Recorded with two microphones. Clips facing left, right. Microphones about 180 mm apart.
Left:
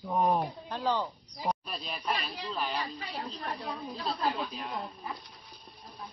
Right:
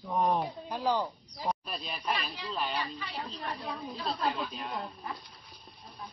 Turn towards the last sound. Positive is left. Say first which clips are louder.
# even
turn(degrees=0)  # may be behind; listen again after turning